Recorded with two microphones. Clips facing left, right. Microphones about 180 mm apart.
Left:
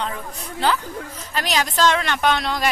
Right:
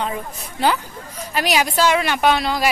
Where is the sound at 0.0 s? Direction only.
15° right (ahead or behind).